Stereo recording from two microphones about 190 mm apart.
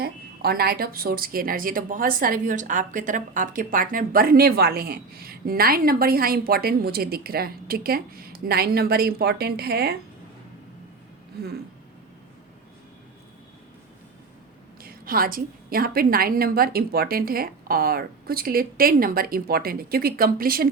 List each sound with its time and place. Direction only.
0.0 s speech: 55° right (ahead or behind)
14.8 s speech: 50° right (ahead or behind)